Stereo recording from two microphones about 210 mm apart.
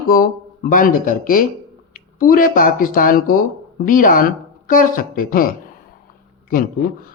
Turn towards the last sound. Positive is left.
turn(degrees=40)  # may be behind; listen again after turning